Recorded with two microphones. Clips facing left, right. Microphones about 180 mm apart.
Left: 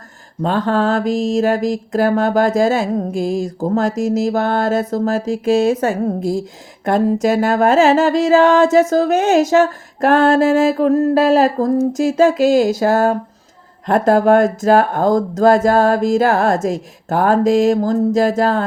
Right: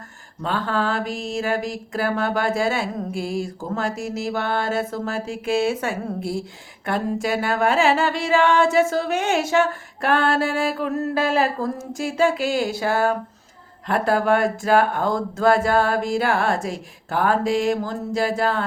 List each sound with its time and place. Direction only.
0.4 s mantra: 40° left (ahead or behind)